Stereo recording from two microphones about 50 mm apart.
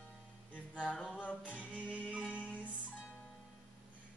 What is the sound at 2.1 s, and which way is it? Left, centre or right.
Music, right.